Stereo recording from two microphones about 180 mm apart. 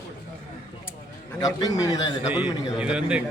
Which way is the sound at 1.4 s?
20° left (ahead or behind).